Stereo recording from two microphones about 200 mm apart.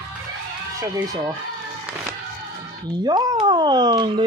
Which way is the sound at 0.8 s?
15° right (ahead or behind).